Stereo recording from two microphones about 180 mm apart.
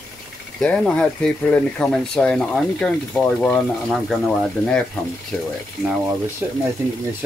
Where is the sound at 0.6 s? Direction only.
5° left (ahead or behind).